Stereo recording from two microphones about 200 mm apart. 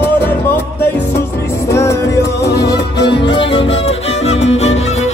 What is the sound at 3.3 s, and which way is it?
Music, 25° left (ahead or behind).